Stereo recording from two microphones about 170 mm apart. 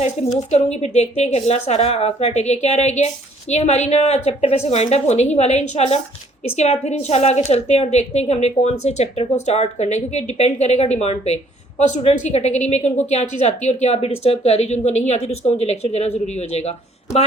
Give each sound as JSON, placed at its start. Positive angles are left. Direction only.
{"t": 0.0, "sound": "a woman's voice", "side_deg": 40}